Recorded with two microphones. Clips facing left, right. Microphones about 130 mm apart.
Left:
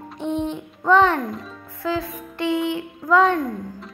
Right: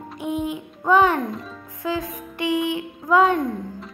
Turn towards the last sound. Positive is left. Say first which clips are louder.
# even
turn(degrees=-20)  # may be behind; listen again after turning